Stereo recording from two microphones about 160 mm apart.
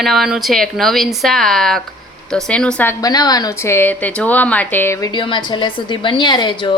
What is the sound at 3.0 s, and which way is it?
Speech, 25° left (ahead or behind).